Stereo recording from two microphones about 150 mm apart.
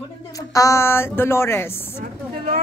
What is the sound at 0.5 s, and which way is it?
Speech, 20° left (ahead or behind).